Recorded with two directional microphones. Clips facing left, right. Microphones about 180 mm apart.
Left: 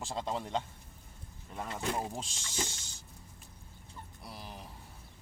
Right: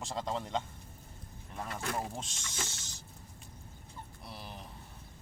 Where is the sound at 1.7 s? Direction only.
20° left (ahead or behind).